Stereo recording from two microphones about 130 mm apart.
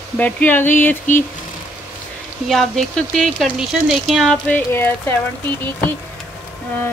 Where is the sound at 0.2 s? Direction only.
15° left (ahead or behind).